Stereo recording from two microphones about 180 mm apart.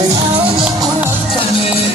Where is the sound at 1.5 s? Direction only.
35° left (ahead or behind).